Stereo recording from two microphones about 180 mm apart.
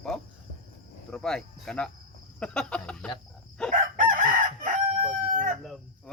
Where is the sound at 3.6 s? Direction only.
5° left (ahead or behind).